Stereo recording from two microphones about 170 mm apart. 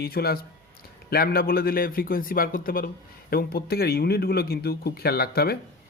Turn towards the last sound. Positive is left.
turn(degrees=65)  # may be behind; listen again after turning